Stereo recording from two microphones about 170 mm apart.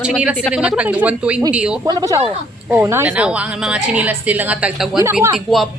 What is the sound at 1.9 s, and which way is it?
A woman's voice, 20° right (ahead or behind).